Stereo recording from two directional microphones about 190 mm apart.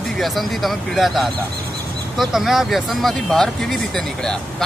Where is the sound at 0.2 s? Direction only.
Centre (ahead or behind).